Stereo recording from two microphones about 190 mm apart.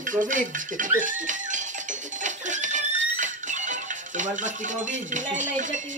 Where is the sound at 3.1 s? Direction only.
40° right (ahead or behind).